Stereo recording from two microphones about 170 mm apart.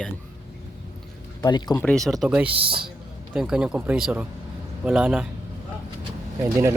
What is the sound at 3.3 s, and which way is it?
A man's voice, 5° right (ahead or behind).